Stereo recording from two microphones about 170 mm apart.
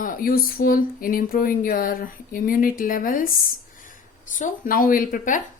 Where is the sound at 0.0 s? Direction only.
55° left (ahead or behind).